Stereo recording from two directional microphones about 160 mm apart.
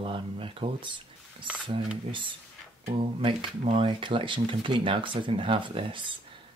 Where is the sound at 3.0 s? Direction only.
35° right (ahead or behind).